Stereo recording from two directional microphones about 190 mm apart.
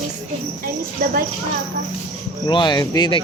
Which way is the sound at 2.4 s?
25° left (ahead or behind).